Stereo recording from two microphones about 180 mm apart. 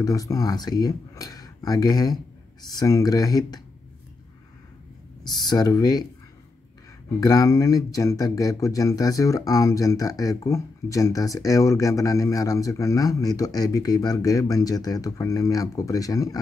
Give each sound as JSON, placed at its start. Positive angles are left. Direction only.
{"t": 0.0, "sound": "speech", "side_deg": 20}
{"t": 5.3, "sound": "speech", "side_deg": 20}
{"t": 7.2, "sound": "speech", "side_deg": 20}